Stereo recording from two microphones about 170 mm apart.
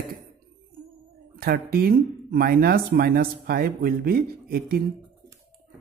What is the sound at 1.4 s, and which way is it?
Speech, 60° right (ahead or behind).